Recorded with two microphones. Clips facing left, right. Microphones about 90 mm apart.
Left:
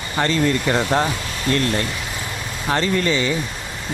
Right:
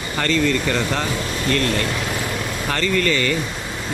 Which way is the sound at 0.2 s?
35° left (ahead or behind).